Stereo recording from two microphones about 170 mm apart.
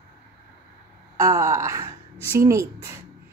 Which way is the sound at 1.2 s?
20° right (ahead or behind).